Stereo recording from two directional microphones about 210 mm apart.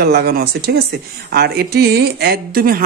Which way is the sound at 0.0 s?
50° right (ahead or behind).